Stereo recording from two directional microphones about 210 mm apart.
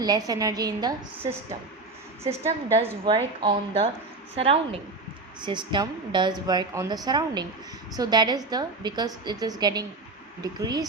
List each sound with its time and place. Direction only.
0.0 s a woman's voice: 15° right (ahead or behind)